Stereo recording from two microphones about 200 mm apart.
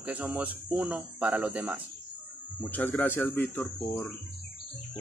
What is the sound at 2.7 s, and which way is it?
Speech, 10° left (ahead or behind).